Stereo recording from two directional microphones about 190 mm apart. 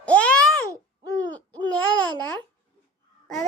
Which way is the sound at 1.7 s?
10° left (ahead or behind).